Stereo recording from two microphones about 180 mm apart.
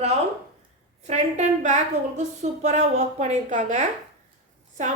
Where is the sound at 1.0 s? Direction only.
40° right (ahead or behind).